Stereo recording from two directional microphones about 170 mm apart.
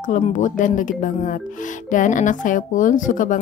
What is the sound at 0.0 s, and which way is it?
Speech, 45° left (ahead or behind).